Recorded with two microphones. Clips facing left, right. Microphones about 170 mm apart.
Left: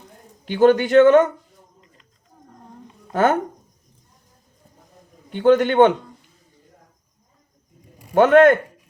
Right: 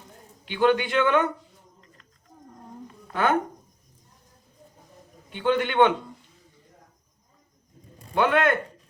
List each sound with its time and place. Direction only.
0.4 s speech: 40° left (ahead or behind)
3.1 s speech: 45° left (ahead or behind)
5.3 s speech: 45° left (ahead or behind)
8.1 s speech: 45° left (ahead or behind)